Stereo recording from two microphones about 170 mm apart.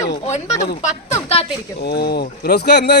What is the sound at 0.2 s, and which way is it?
Speech, 40° left (ahead or behind).